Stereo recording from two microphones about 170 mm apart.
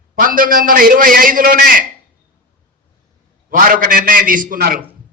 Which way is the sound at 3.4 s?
55° right (ahead or behind).